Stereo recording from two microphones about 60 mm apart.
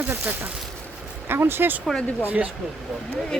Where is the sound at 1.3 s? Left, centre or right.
Right.